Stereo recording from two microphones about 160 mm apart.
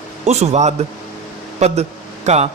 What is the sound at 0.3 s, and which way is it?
A man's voice, 45° right (ahead or behind).